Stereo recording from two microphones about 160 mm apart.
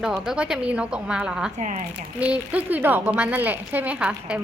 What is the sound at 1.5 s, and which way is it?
Speech, 50° right (ahead or behind).